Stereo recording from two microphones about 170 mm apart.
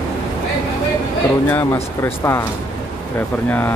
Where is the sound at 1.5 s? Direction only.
15° left (ahead or behind).